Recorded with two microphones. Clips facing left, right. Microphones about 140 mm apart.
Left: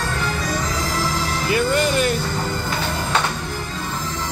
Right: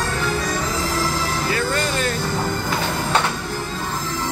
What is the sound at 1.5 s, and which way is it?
Music, 15° left (ahead or behind).